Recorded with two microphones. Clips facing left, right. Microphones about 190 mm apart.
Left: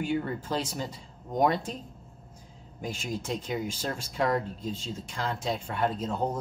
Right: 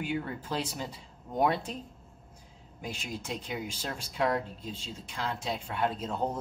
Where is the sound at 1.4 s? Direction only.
40° left (ahead or behind).